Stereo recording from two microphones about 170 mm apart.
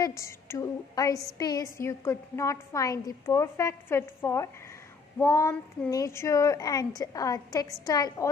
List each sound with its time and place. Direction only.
0.0 s a woman's voice: 15° left (ahead or behind)